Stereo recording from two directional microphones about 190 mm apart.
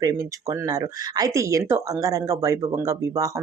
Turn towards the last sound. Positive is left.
turn(degrees=-15)  # may be behind; listen again after turning